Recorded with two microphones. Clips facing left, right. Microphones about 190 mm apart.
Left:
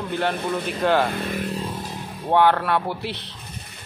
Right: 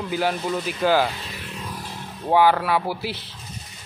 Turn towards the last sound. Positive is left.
turn(degrees=0)  # may be behind; listen again after turning